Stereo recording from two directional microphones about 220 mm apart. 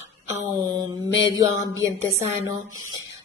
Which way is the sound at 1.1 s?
15° right (ahead or behind).